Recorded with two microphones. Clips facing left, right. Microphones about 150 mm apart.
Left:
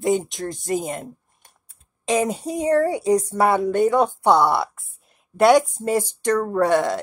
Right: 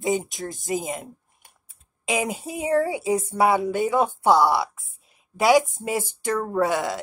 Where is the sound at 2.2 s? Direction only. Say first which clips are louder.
Left 5 dB; 5° right (ahead or behind).